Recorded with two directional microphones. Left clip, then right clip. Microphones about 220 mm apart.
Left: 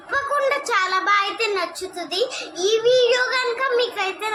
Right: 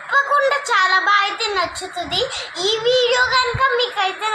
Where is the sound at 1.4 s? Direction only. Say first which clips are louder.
Right 2 dB; 45° left (ahead or behind).